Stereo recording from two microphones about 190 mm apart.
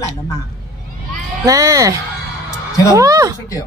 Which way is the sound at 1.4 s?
15° right (ahead or behind).